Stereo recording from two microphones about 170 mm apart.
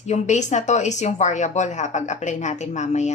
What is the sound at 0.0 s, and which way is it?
A woman's voice, 45° left (ahead or behind).